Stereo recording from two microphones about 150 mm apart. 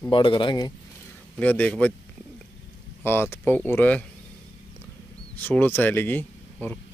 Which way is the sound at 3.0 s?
15° left (ahead or behind).